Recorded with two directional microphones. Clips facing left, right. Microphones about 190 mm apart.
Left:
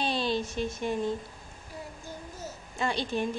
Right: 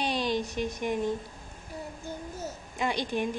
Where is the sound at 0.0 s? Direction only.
15° right (ahead or behind).